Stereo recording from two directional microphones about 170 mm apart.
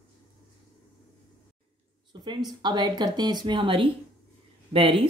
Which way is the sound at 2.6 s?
25° right (ahead or behind).